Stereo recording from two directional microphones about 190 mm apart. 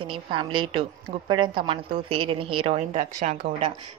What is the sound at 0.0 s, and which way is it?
A woman's voice, 25° right (ahead or behind).